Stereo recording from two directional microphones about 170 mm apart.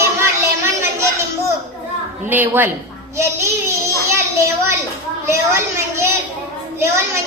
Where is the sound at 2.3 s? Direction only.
10° right (ahead or behind).